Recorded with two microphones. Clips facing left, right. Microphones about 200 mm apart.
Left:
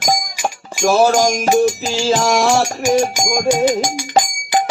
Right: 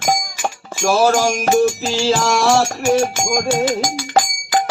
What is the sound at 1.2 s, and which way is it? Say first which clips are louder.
Music: left 1 dB; 15° left (ahead or behind).